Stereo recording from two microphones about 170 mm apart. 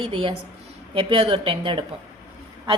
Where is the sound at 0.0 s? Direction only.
30° right (ahead or behind).